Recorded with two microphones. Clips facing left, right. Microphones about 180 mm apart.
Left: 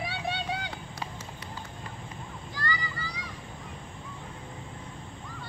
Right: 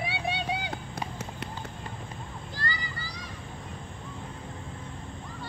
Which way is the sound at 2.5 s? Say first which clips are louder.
Left 3 dB; 30° right (ahead or behind).